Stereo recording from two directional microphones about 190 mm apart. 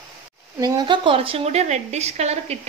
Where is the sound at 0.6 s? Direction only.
20° right (ahead or behind).